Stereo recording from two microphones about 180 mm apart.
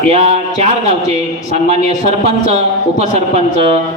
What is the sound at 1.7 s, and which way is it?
A man's voice, 35° right (ahead or behind).